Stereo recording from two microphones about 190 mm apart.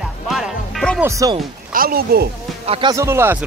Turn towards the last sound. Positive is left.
turn(degrees=-15)  # may be behind; listen again after turning